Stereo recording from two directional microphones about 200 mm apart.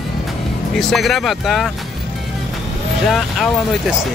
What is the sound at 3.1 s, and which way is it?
Speech, centre (ahead or behind).